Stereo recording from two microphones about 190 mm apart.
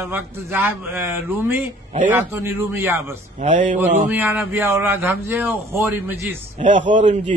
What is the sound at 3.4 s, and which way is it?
Speech, 40° right (ahead or behind).